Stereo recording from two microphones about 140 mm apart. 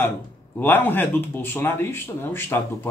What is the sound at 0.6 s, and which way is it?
Speech, 15° left (ahead or behind).